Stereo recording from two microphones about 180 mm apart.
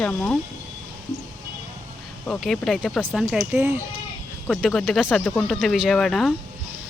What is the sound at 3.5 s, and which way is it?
Speech, 15° right (ahead or behind).